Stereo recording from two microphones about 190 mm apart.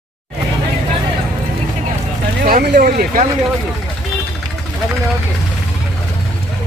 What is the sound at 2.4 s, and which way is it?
Speech, 55° right (ahead or behind).